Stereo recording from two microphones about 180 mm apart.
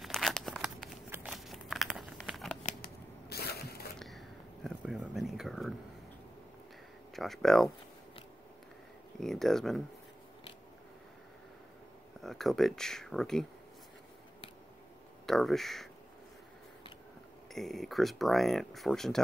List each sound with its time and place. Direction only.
0.0 s crumpling: centre (ahead or behind)
2.8 s crushing: 60° left (ahead or behind)
4.6 s a sound: 5° right (ahead or behind)
7.2 s speech: centre (ahead or behind)
9.2 s speech: centre (ahead or behind)
12.2 s speech: centre (ahead or behind)
15.2 s speech: centre (ahead or behind)
17.5 s speech: centre (ahead or behind)